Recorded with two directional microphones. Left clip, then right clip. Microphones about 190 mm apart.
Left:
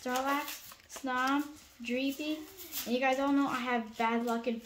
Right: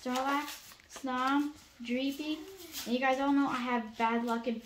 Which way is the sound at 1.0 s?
25° left (ahead or behind).